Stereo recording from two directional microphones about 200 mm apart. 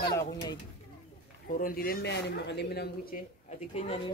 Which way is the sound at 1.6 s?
45° left (ahead or behind).